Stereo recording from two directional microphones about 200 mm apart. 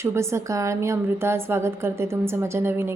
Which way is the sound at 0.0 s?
15° right (ahead or behind).